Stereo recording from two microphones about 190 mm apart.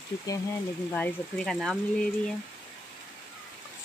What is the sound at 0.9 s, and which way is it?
Speech, 5° left (ahead or behind).